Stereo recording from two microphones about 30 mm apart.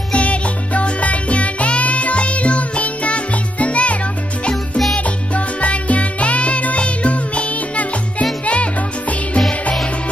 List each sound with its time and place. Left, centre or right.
0.1 s music: left